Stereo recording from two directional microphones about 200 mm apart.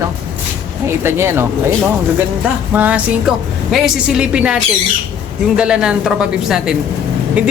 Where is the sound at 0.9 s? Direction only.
10° right (ahead or behind).